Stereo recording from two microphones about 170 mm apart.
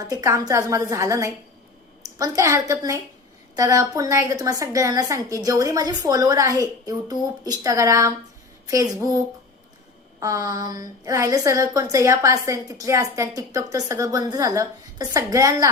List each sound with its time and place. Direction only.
0.0 s a woman's voice: 20° right (ahead or behind)
10.2 s a woman's voice: 20° right (ahead or behind)